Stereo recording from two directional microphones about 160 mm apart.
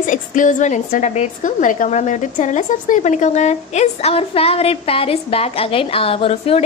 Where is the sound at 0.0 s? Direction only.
55° left (ahead or behind).